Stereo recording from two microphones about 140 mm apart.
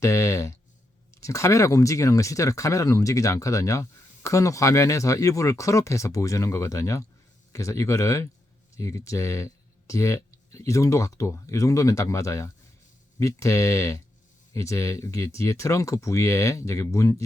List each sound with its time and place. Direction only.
0.0 s speech: 20° left (ahead or behind)